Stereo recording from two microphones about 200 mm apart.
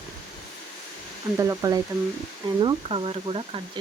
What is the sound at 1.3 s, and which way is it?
Speech, 15° right (ahead or behind).